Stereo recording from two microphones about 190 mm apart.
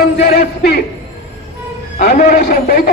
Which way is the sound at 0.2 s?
55° left (ahead or behind).